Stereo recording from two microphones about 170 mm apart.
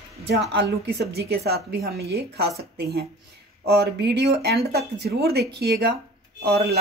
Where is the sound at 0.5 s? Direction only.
70° right (ahead or behind).